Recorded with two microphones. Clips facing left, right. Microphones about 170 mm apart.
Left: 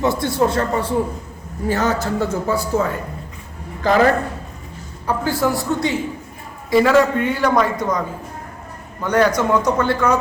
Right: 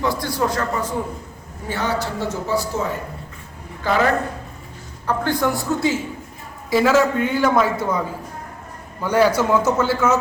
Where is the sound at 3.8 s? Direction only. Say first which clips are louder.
Left 4 dB; 40° left (ahead or behind).